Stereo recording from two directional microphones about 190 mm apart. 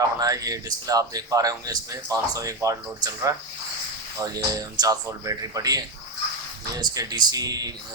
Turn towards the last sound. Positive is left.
turn(degrees=-20)  # may be behind; listen again after turning